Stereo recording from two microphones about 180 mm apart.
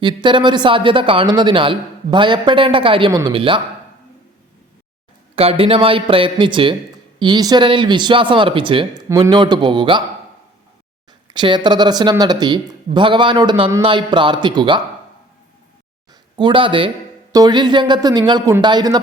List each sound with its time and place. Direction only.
0.0 s a man's voice: 25° right (ahead or behind)
5.3 s a man's voice: 35° right (ahead or behind)
11.3 s a man's voice: 25° right (ahead or behind)
16.4 s a man's voice: 30° right (ahead or behind)